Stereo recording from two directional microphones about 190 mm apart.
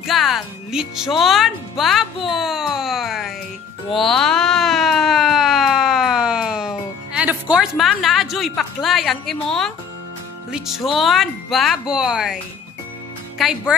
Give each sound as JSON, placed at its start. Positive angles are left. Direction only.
{"t": 0.0, "sound": "speech", "side_deg": 0}
{"t": 3.9, "sound": "a sound", "side_deg": 0}
{"t": 10.5, "sound": "speech", "side_deg": 0}
{"t": 13.4, "sound": "speech", "side_deg": -5}